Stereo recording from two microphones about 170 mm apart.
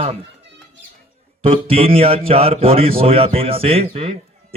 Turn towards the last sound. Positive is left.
turn(degrees=-35)  # may be behind; listen again after turning